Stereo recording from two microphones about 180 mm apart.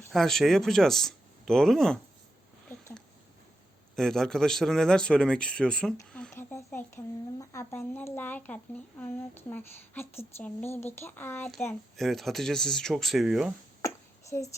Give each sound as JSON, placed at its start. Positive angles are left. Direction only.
{"t": 0.1, "sound": "a man's voice", "side_deg": 0}
{"t": 3.9, "sound": "a man's voice", "side_deg": 5}
{"t": 6.3, "sound": "a sound", "side_deg": 15}
{"t": 6.7, "sound": "speech", "side_deg": 15}
{"t": 11.7, "sound": "a man's voice", "side_deg": 0}
{"t": 13.8, "sound": "a sound", "side_deg": 15}